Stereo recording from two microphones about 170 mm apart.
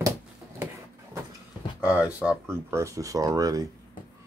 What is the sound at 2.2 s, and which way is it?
Speech, 10° right (ahead or behind).